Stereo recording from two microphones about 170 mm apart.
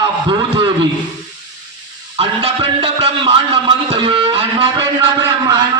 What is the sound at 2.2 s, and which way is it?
A man's voice, 35° right (ahead or behind).